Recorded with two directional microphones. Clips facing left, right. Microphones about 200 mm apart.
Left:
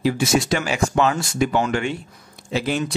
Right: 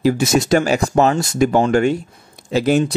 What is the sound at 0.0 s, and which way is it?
Speech, 40° right (ahead or behind).